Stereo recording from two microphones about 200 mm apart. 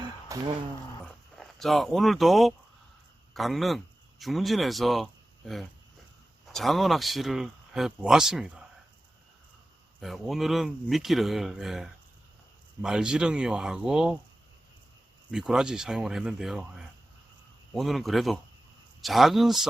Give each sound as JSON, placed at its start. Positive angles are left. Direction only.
{"t": 0.0, "sound": "a sound", "side_deg": -20}
{"t": 1.0, "sound": "speech", "side_deg": 0}
{"t": 6.5, "sound": "speech", "side_deg": 0}
{"t": 10.0, "sound": "speech", "side_deg": 0}
{"t": 15.3, "sound": "speech", "side_deg": -5}
{"t": 17.7, "sound": "speech", "side_deg": 0}